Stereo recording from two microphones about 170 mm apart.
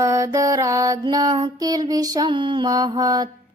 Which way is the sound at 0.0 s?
20° right (ahead or behind).